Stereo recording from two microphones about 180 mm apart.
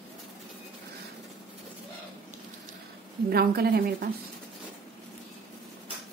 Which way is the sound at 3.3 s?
60° right (ahead or behind).